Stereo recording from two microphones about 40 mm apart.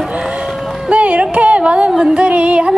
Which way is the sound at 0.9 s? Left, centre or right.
Right.